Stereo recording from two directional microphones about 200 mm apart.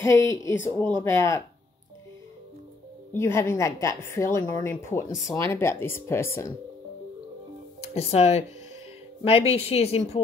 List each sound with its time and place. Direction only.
0.0 s a woman's voice: 15° left (ahead or behind)
3.1 s a woman's voice: 15° left (ahead or behind)
7.9 s speech: 30° left (ahead or behind)